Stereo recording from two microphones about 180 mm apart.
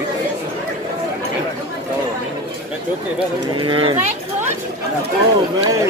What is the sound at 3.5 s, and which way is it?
Speech, 30° right (ahead or behind).